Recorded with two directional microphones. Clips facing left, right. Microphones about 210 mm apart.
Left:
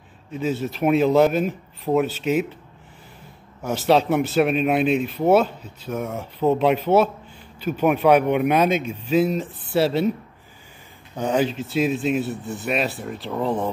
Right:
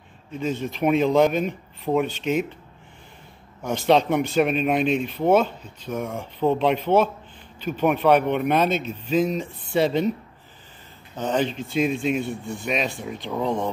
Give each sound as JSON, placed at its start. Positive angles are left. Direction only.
{"t": 0.3, "sound": "speech", "side_deg": 5}
{"t": 3.6, "sound": "speech", "side_deg": 5}
{"t": 11.1, "sound": "speech", "side_deg": 10}